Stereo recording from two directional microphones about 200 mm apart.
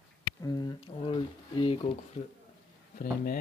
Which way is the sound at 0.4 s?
20° left (ahead or behind).